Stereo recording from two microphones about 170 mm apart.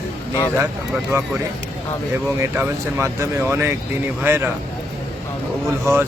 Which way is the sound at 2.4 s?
15° right (ahead or behind).